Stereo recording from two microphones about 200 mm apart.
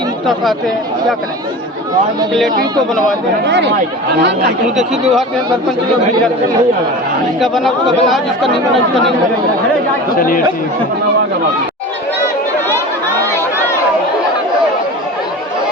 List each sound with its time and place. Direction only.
3.4 s speech: 60° right (ahead or behind)
7.4 s speech: centre (ahead or behind)
10.2 s speech: 45° left (ahead or behind)